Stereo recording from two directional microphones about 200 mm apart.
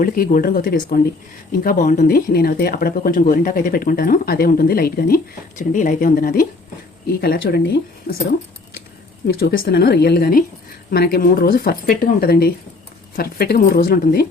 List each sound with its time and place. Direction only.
0.0 s speech: 45° left (ahead or behind)